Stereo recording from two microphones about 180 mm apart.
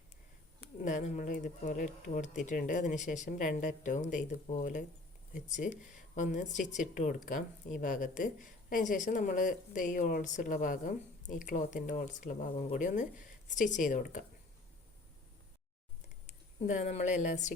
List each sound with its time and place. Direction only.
0.8 s speech: 45° left (ahead or behind)
16.2 s speech: 40° left (ahead or behind)